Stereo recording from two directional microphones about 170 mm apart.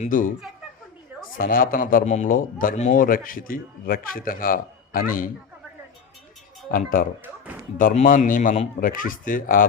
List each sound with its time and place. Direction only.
0.0 s a man's voice: 50° left (ahead or behind)
1.4 s a man's voice: 55° left (ahead or behind)
6.7 s a man's voice: 55° left (ahead or behind)